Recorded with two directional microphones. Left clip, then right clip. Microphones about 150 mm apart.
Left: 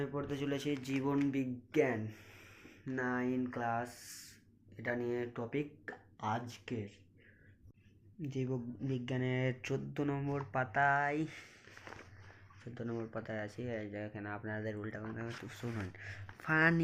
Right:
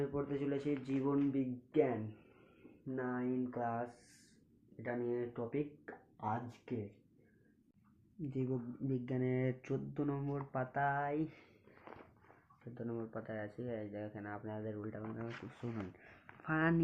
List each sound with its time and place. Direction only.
0.0 s speech: 5° left (ahead or behind)
8.2 s speech: 5° left (ahead or behind)
12.7 s speech: 25° left (ahead or behind)
15.4 s speech: 5° right (ahead or behind)
16.4 s speech: 10° left (ahead or behind)